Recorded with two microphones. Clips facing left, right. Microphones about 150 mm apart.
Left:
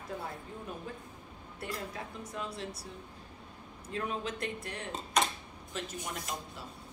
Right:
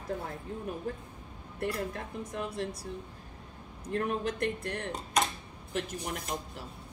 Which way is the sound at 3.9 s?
55° right (ahead or behind).